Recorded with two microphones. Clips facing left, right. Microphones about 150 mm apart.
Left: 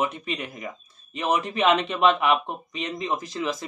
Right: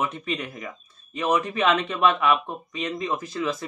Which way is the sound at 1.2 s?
15° left (ahead or behind).